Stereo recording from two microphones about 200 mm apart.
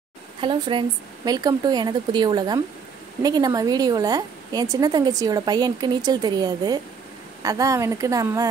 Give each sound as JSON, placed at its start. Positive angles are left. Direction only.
{"t": 0.4, "sound": "a woman's voice", "side_deg": -25}